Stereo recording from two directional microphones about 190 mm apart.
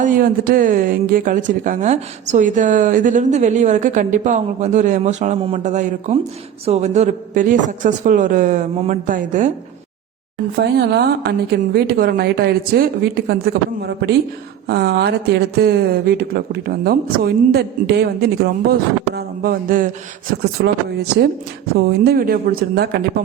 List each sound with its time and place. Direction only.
0.0 s a woman's voice: 45° right (ahead or behind)
10.6 s a woman's voice: 60° right (ahead or behind)
20.4 s a woman's voice: 60° right (ahead or behind)